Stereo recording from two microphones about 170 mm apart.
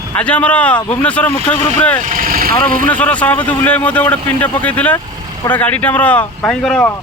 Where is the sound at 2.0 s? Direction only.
55° right (ahead or behind).